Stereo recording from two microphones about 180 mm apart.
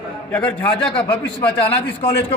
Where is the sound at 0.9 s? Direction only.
25° left (ahead or behind).